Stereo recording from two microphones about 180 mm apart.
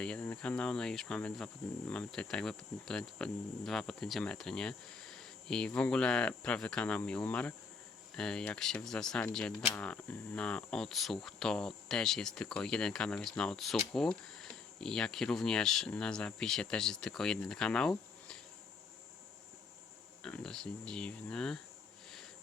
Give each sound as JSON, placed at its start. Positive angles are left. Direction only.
{"t": 0.0, "sound": "speech", "side_deg": 5}
{"t": 20.2, "sound": "speech", "side_deg": 5}